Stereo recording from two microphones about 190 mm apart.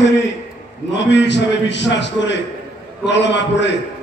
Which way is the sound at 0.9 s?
70° left (ahead or behind).